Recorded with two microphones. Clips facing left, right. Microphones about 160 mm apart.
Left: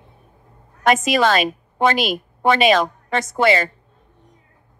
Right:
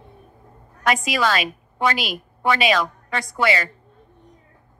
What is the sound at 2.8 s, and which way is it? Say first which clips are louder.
Speech: left 4 dB; 25° left (ahead or behind).